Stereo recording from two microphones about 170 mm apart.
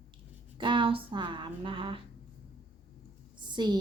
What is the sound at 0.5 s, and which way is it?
Speech, 30° right (ahead or behind).